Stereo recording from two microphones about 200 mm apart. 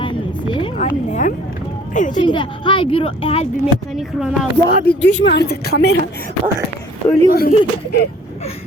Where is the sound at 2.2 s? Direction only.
25° left (ahead or behind).